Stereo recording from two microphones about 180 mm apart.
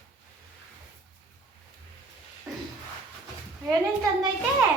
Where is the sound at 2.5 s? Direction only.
15° right (ahead or behind).